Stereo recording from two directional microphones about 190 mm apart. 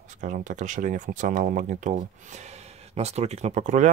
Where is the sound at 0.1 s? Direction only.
40° right (ahead or behind).